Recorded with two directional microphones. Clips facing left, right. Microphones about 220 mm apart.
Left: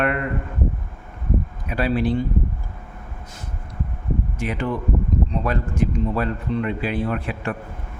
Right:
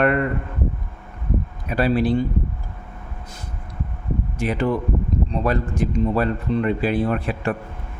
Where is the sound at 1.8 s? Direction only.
40° right (ahead or behind).